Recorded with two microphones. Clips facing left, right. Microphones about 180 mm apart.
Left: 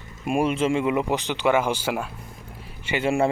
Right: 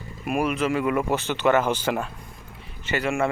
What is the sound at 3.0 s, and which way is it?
Speech, 30° left (ahead or behind).